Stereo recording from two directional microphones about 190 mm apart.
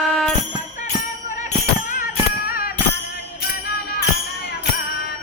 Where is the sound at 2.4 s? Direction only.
50° left (ahead or behind).